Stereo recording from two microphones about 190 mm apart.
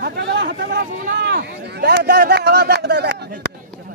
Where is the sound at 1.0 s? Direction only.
55° right (ahead or behind).